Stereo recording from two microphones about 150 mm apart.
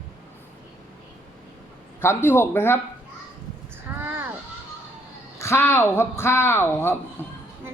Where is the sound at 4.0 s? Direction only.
15° right (ahead or behind).